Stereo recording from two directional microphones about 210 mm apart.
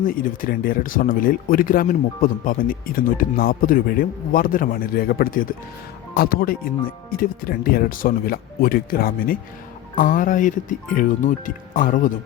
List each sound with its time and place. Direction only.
0.0 s speech: 40° left (ahead or behind)